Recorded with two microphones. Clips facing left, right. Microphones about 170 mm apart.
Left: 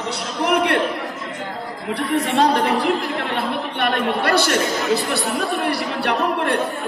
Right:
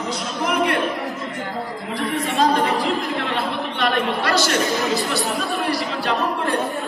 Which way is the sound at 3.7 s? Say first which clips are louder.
Left 1 dB; 55° left (ahead or behind).